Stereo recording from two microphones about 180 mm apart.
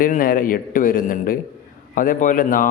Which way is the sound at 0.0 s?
50° left (ahead or behind).